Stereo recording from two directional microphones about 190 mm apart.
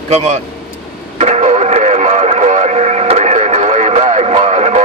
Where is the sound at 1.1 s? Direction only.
35° right (ahead or behind).